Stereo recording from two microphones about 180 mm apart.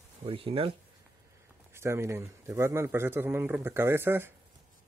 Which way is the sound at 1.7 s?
15° right (ahead or behind).